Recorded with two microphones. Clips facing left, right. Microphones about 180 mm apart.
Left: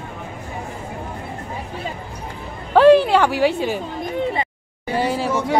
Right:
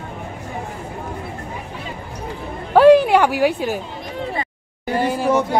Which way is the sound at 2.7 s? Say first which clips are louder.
Right 1 dB; 10° right (ahead or behind).